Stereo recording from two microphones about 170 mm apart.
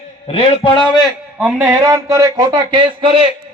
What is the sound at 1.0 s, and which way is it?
A man's voice, 10° right (ahead or behind).